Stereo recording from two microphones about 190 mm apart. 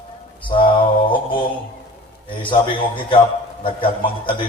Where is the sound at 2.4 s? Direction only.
25° left (ahead or behind).